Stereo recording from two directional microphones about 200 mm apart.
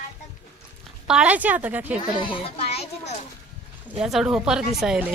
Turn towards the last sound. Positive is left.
turn(degrees=-5)  # may be behind; listen again after turning